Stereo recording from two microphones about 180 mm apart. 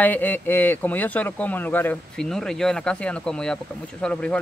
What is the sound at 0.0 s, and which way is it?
Speech, 10° left (ahead or behind).